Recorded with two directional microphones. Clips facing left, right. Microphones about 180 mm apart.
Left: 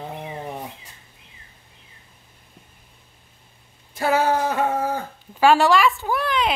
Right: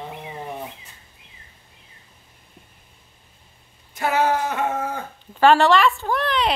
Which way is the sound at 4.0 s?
30° left (ahead or behind).